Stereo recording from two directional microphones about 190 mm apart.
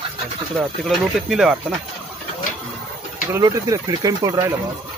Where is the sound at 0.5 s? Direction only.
Centre (ahead or behind).